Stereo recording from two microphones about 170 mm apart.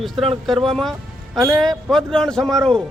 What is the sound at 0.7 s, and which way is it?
Music, centre (ahead or behind).